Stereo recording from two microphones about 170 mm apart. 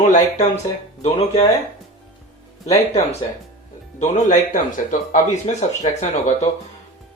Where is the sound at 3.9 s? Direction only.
45° left (ahead or behind).